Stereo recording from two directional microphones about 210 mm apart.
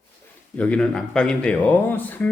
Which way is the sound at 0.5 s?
5° left (ahead or behind).